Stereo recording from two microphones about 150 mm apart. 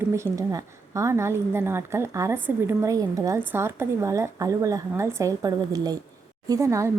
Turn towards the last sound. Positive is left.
turn(degrees=-20)  # may be behind; listen again after turning